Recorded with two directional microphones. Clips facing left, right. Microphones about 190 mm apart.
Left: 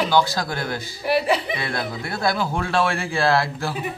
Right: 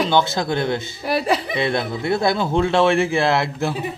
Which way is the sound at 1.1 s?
40° right (ahead or behind).